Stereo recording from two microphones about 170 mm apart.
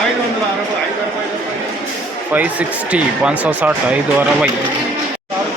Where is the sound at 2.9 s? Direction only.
5° right (ahead or behind).